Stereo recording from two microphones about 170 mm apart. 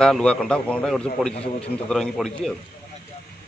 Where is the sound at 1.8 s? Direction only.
5° left (ahead or behind).